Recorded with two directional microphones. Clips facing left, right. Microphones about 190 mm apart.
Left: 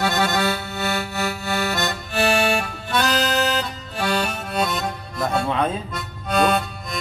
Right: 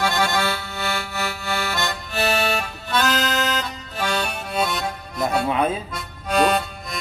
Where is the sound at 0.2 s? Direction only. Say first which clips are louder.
Left 1 dB; 40° left (ahead or behind).